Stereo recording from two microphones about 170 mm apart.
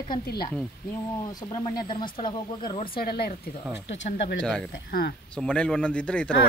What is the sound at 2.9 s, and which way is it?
Speech, 65° left (ahead or behind).